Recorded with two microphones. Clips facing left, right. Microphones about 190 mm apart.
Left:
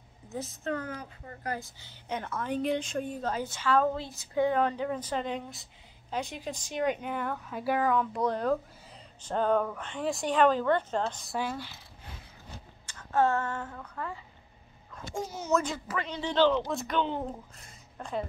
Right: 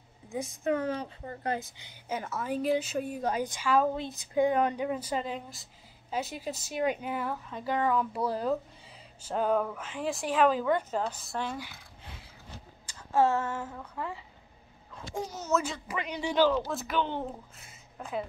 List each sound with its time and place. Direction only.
0.3 s a woman's voice: 10° right (ahead or behind)
0.7 s a woman's voice: 25° right (ahead or behind)
2.0 s a woman's voice: 5° right (ahead or behind)
7.9 s a woman's voice: 5° right (ahead or behind)
12.8 s speech: 10° right (ahead or behind)
15.1 s speech: 10° left (ahead or behind)
15.5 s a woman's voice: centre (ahead or behind)